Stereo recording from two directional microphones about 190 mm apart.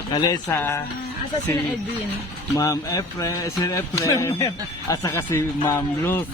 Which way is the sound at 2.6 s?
20° left (ahead or behind).